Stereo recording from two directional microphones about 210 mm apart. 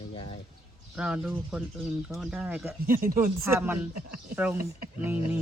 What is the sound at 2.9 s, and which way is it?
Speech, 40° right (ahead or behind).